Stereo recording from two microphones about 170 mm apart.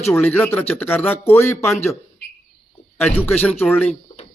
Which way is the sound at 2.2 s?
75° left (ahead or behind).